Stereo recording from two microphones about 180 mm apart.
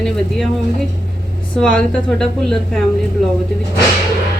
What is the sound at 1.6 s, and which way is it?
Speech, 5° left (ahead or behind).